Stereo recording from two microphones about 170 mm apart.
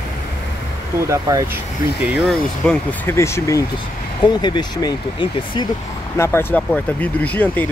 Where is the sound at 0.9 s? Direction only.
15° right (ahead or behind).